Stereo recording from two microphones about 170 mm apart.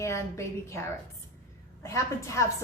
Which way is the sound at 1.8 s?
15° left (ahead or behind).